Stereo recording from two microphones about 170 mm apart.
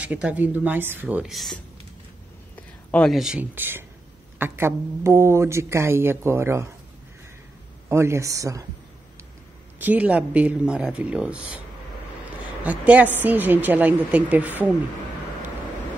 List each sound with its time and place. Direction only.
0.0 s speech: 10° right (ahead or behind)
2.9 s speech: 5° left (ahead or behind); by 6.7 s 15° right (ahead or behind)
7.9 s speech: 15° right (ahead or behind)
9.8 s speech: 10° right (ahead or behind)
12.6 s speech: 10° right (ahead or behind)